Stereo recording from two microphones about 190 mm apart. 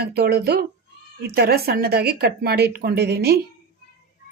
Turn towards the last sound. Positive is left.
turn(degrees=-60)  # may be behind; listen again after turning